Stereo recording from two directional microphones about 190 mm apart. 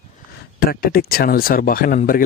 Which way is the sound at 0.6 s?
50° left (ahead or behind).